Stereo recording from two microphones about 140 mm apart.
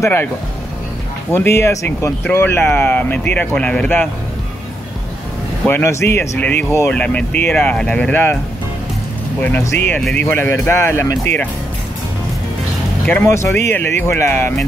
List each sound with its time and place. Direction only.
0.0 s speech: 15° left (ahead or behind)
1.3 s speech: 15° left (ahead or behind)
5.7 s speech: 15° left (ahead or behind)
9.4 s speech: 10° left (ahead or behind)
13.0 s speech: 15° left (ahead or behind)